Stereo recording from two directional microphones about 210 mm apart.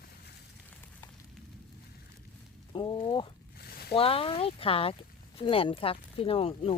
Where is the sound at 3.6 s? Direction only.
50° left (ahead or behind).